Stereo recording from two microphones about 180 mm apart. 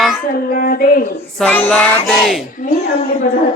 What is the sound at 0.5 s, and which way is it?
Speech, 50° left (ahead or behind).